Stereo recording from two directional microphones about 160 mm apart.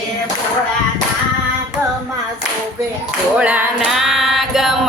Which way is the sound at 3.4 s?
10° right (ahead or behind).